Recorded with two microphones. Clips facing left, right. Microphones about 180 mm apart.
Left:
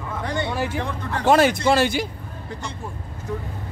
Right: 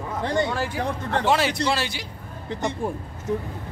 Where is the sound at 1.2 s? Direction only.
50° left (ahead or behind).